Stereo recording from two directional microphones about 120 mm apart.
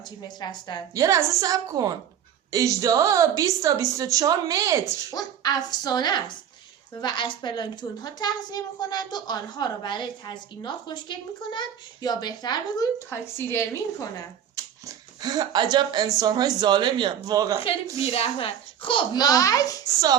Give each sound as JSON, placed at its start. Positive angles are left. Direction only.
{"t": 0.0, "sound": "a child's voice", "side_deg": 35}
{"t": 0.9, "sound": "a woman's voice", "side_deg": -30}
{"t": 5.1, "sound": "a child's voice", "side_deg": 35}
{"t": 13.1, "sound": "a woman's voice", "side_deg": 20}
{"t": 14.5, "sound": "speech", "side_deg": -30}
{"t": 18.0, "sound": "a child's voice", "side_deg": 55}